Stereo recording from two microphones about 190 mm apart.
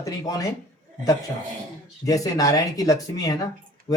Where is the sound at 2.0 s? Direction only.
20° left (ahead or behind).